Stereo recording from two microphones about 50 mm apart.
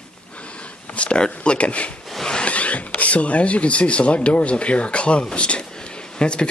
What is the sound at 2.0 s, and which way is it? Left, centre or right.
Zipper, centre.